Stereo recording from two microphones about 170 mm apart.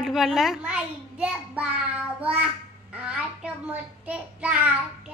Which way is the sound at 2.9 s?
5° right (ahead or behind).